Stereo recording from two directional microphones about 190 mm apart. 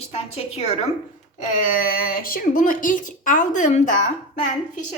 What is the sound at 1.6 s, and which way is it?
A woman's voice, 50° left (ahead or behind).